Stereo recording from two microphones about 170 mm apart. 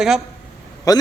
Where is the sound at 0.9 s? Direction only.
20° left (ahead or behind).